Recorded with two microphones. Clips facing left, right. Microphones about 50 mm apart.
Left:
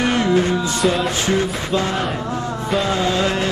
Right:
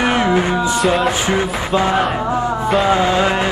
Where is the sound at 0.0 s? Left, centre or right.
Centre.